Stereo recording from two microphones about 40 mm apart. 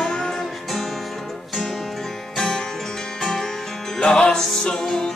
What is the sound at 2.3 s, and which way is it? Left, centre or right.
Music, centre.